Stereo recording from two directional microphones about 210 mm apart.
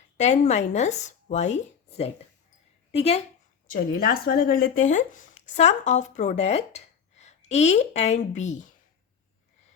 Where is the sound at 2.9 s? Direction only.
30° left (ahead or behind).